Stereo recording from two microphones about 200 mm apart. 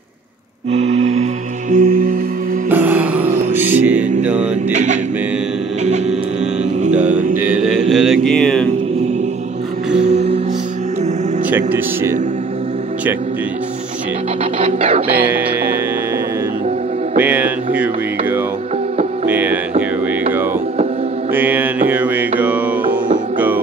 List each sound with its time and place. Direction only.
0.7 s music: 30° right (ahead or behind)
2.7 s music: 10° right (ahead or behind)
4.2 s mantra: 5° right (ahead or behind)
7.4 s mantra: 5° right (ahead or behind)
10.0 s music: 35° right (ahead or behind)
11.5 s speech: 10° right (ahead or behind)
14.6 s music: 35° right (ahead or behind)
15.0 s music: 10° right (ahead or behind)
17.2 s music: 5° right (ahead or behind)
19.2 s music: 10° right (ahead or behind)
21.3 s mantra: 10° right (ahead or behind)
23.3 s music: 10° right (ahead or behind)